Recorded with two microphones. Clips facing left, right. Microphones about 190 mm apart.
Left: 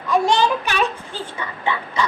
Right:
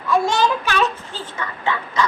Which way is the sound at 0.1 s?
15° left (ahead or behind).